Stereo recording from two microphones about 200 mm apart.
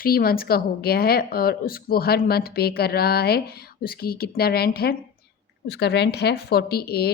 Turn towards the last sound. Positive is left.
turn(degrees=50)  # may be behind; listen again after turning